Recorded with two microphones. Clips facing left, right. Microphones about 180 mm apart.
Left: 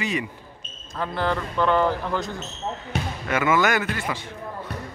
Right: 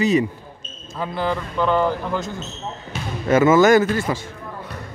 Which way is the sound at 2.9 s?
65° left (ahead or behind).